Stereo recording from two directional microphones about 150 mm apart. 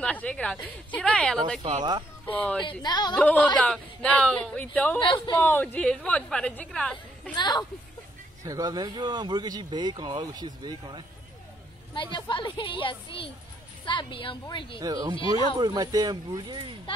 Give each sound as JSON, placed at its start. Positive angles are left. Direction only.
{"t": 0.0, "sound": "a woman's voice", "side_deg": 10}
{"t": 1.6, "sound": "speech", "side_deg": -50}
{"t": 2.2, "sound": "a woman's voice", "side_deg": 10}
{"t": 2.8, "sound": "speech", "side_deg": 30}
{"t": 3.2, "sound": "a woman's voice", "side_deg": 10}
{"t": 5.0, "sound": "a woman's voice", "side_deg": 30}
{"t": 5.4, "sound": "a woman's voice", "side_deg": 15}
{"t": 7.3, "sound": "speech", "side_deg": 30}
{"t": 8.5, "sound": "speech", "side_deg": -25}
{"t": 11.9, "sound": "a woman's voice", "side_deg": 35}
{"t": 14.8, "sound": "speech", "side_deg": -25}